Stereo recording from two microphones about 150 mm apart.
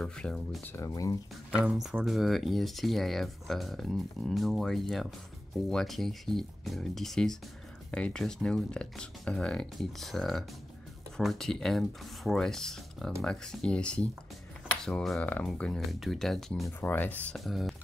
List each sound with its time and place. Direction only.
0.0 s speech: 5° left (ahead or behind)
0.7 s speech: 20° left (ahead or behind)
1.7 s speech: centre (ahead or behind)
16.6 s speech: 15° left (ahead or behind)